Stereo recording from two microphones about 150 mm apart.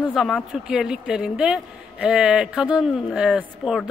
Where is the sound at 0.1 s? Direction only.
Centre (ahead or behind).